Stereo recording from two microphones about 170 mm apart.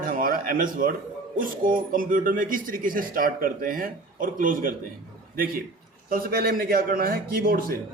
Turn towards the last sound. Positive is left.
turn(degrees=-60)  # may be behind; listen again after turning